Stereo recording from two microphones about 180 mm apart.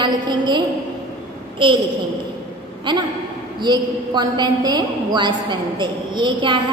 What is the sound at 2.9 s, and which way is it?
A woman's voice, 25° right (ahead or behind).